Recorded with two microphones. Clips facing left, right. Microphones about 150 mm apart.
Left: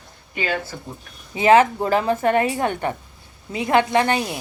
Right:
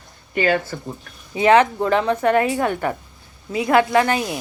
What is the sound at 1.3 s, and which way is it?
Speech, 5° left (ahead or behind).